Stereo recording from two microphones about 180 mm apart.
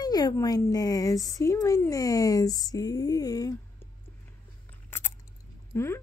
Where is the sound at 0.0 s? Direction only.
20° left (ahead or behind).